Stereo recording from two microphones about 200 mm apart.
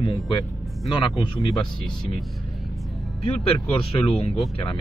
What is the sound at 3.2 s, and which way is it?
Speech, 30° left (ahead or behind).